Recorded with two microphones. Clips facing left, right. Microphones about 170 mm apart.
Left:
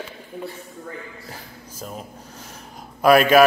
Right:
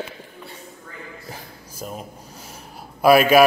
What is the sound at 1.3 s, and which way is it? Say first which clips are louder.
Speech: right 1 dB; 15° right (ahead or behind).